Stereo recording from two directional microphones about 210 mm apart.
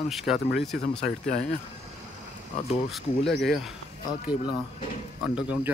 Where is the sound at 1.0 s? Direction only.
35° left (ahead or behind).